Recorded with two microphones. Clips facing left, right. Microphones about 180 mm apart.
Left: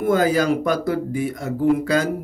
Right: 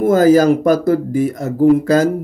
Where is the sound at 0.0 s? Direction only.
40° right (ahead or behind).